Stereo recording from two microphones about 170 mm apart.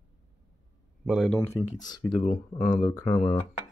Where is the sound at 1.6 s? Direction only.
25° left (ahead or behind).